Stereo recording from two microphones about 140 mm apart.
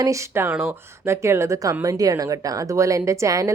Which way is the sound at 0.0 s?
20° right (ahead or behind).